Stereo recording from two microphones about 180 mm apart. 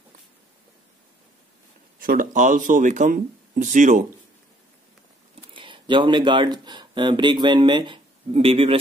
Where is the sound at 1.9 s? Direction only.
50° right (ahead or behind).